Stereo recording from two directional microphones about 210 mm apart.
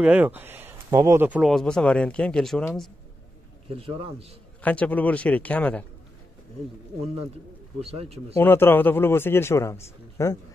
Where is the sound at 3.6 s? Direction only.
25° right (ahead or behind).